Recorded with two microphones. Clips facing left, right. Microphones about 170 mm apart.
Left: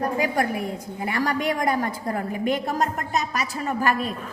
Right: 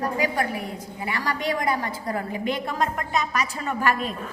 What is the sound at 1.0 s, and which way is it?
A woman's voice, 45° left (ahead or behind).